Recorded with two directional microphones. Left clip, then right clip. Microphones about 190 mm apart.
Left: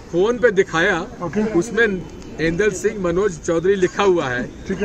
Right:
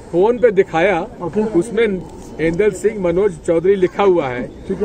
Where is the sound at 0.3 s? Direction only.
70° right (ahead or behind).